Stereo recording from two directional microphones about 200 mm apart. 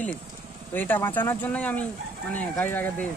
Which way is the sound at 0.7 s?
10° left (ahead or behind).